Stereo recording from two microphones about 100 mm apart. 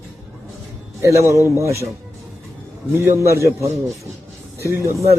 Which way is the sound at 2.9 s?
25° right (ahead or behind).